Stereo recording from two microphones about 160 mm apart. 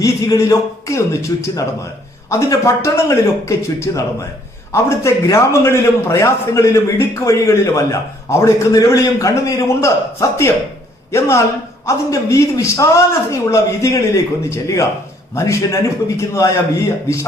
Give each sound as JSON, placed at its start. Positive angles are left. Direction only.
{"t": 0.0, "sound": "a man's voice", "side_deg": 20}